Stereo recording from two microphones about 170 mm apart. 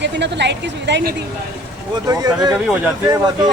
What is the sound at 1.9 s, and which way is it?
Speech, 25° right (ahead or behind).